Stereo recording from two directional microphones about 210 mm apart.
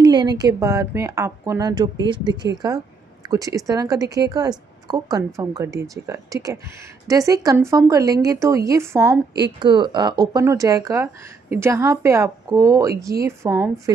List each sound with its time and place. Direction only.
0.0 s a woman's voice: 20° right (ahead or behind)